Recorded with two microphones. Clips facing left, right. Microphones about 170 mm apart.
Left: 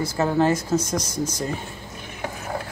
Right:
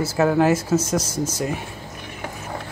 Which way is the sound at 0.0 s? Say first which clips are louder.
Right 3 dB; 5° right (ahead or behind).